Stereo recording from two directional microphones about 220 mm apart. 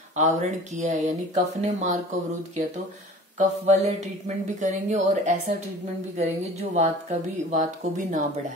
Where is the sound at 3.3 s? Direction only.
30° right (ahead or behind).